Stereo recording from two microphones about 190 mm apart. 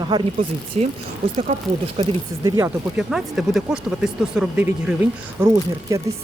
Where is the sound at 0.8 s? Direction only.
35° right (ahead or behind).